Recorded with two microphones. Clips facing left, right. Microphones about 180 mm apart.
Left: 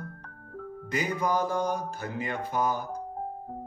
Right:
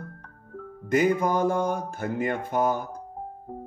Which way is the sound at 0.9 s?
50° right (ahead or behind).